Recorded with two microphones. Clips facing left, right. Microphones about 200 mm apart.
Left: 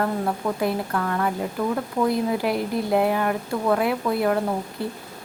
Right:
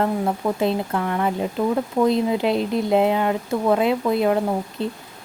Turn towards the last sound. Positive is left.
turn(degrees=-20)  # may be behind; listen again after turning